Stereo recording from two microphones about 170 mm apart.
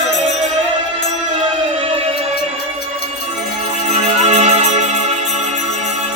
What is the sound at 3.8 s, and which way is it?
Music, 40° right (ahead or behind).